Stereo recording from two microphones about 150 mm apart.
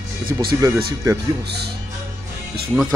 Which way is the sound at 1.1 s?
25° right (ahead or behind).